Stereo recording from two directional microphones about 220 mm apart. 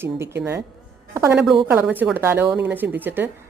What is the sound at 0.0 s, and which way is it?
A woman's voice, 10° right (ahead or behind).